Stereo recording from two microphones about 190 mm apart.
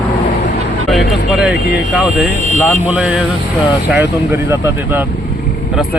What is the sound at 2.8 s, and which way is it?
Speech, 5° right (ahead or behind).